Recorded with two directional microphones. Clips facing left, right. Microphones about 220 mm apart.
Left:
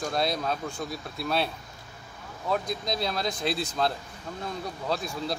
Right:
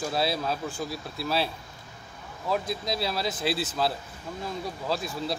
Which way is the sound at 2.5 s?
5° right (ahead or behind).